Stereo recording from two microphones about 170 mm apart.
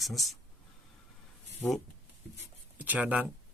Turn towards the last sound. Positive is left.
turn(degrees=-10)  # may be behind; listen again after turning